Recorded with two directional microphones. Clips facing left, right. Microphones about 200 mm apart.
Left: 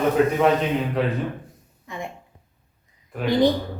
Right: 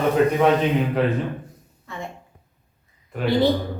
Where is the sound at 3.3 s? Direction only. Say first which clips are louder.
Even; 15° left (ahead or behind).